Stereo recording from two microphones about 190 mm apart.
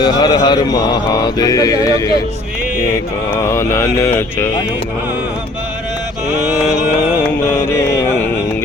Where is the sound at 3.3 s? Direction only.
15° left (ahead or behind).